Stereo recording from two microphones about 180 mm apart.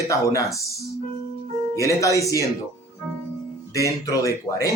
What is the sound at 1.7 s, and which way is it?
Speech, 15° left (ahead or behind).